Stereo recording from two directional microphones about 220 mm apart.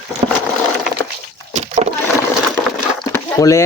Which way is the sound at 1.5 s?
30° right (ahead or behind).